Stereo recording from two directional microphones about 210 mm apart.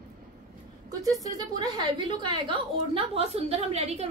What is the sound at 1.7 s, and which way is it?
A woman's voice, 20° right (ahead or behind).